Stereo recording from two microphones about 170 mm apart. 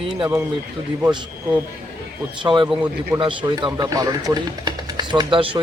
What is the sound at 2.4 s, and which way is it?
Speech, 30° right (ahead or behind).